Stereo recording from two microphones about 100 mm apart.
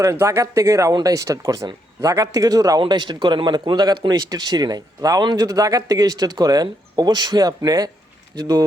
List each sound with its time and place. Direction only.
0.0 s speech: 30° right (ahead or behind)
2.9 s speech: 50° right (ahead or behind)